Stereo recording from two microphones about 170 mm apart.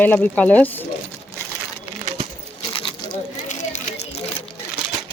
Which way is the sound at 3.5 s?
45° left (ahead or behind).